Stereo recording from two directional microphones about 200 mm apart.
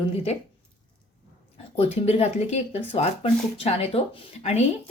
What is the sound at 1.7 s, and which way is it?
Speech, 30° left (ahead or behind).